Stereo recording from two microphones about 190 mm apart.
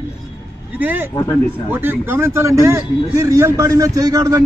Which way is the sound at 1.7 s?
10° right (ahead or behind).